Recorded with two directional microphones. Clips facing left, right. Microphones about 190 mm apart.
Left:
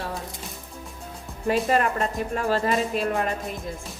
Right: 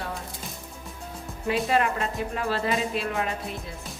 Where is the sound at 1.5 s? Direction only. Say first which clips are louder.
Left 2 dB; 45° left (ahead or behind).